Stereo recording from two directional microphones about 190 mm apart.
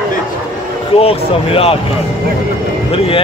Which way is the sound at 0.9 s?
30° left (ahead or behind).